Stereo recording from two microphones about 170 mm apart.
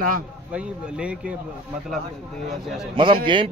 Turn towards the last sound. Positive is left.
turn(degrees=-30)  # may be behind; listen again after turning